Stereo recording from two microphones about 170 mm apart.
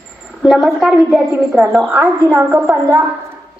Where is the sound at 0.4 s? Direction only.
Centre (ahead or behind).